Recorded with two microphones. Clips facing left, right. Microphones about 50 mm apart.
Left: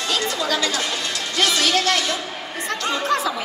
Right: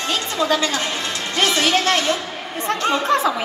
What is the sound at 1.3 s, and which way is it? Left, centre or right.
A woman's voice, right.